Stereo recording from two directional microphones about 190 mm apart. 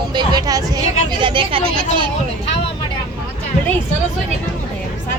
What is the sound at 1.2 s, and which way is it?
Speech, 25° right (ahead or behind).